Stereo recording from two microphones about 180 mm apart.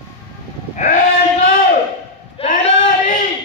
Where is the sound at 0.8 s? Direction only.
45° left (ahead or behind).